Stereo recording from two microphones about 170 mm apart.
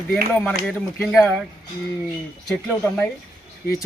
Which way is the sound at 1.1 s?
5° left (ahead or behind).